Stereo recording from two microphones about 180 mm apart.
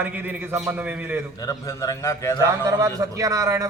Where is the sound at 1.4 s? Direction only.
15° left (ahead or behind).